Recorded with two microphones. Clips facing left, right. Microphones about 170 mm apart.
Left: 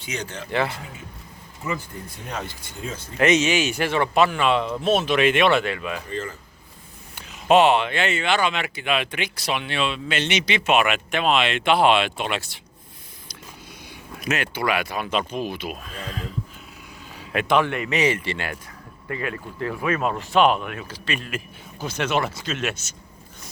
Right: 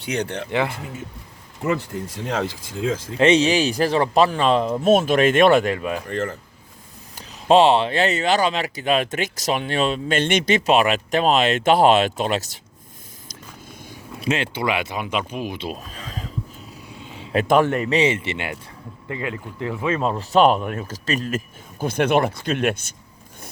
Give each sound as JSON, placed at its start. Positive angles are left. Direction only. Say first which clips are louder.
{"t": 0.0, "sound": "speech", "louder": "right 7 dB", "side_deg": -60}
{"t": 0.5, "sound": "speech", "louder": "right 1 dB", "side_deg": -15}
{"t": 1.6, "sound": "speech", "louder": "right 7 dB", "side_deg": -75}
{"t": 3.2, "sound": "speech", "louder": "right 3 dB", "side_deg": -30}
{"t": 6.1, "sound": "speech", "louder": "right 5 dB", "side_deg": -65}
{"t": 7.2, "sound": "speech", "louder": "right 2 dB", "side_deg": -30}
{"t": 10.7, "sound": "speech", "louder": "right 1 dB", "side_deg": -35}
{"t": 14.2, "sound": "speech", "louder": "right 2 dB", "side_deg": -25}
{"t": 15.5, "sound": "a sound", "louder": "right 2 dB", "side_deg": -30}
{"t": 17.3, "sound": "speech", "louder": "right 4 dB", "side_deg": -40}